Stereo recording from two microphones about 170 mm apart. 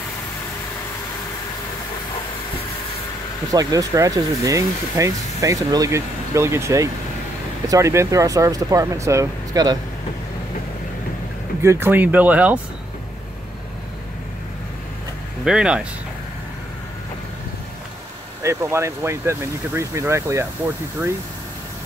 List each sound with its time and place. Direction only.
3.5 s speech: 20° right (ahead or behind)
11.6 s speech: 15° right (ahead or behind)
15.4 s speech: 5° right (ahead or behind)
18.4 s speech: 15° right (ahead or behind)